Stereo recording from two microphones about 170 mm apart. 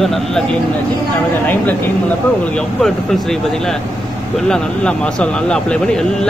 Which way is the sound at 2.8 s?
Centre (ahead or behind).